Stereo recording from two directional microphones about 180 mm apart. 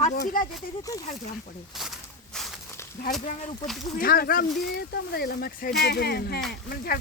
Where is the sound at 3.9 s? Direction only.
55° left (ahead or behind).